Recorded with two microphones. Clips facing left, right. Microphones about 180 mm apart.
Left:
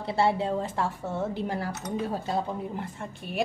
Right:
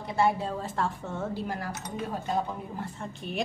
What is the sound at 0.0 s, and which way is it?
Speech, 30° left (ahead or behind).